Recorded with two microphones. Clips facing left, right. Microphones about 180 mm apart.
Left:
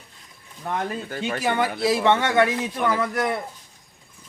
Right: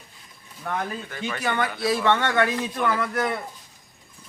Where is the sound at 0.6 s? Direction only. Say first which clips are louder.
Left 2 dB; 20° left (ahead or behind).